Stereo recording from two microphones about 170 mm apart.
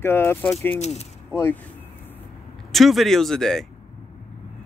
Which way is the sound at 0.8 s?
40° left (ahead or behind).